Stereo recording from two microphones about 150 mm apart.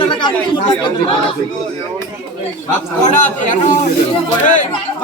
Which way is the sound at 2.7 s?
55° left (ahead or behind).